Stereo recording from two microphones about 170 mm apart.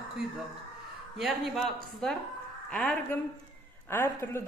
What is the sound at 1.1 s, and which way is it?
A man's voice, centre (ahead or behind).